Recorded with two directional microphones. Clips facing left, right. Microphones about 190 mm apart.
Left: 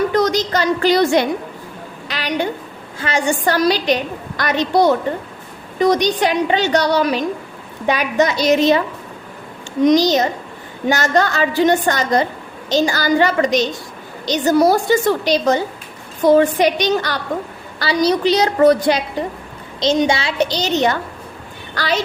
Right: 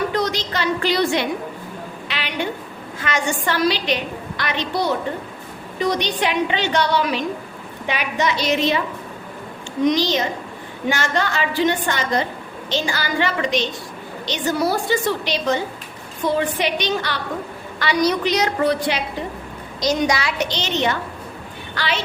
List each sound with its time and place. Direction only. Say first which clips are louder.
0.1 s a woman's voice: left 6 dB; 45° left (ahead or behind)
9.8 s a woman's voice: left 6 dB; 40° left (ahead or behind)
17.7 s a woman's voice: left 3 dB; 30° left (ahead or behind)
19.8 s a woman's voice: left 4 dB; 25° left (ahead or behind)